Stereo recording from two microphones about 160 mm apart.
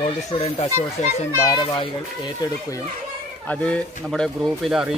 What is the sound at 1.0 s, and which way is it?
Speech, 45° left (ahead or behind).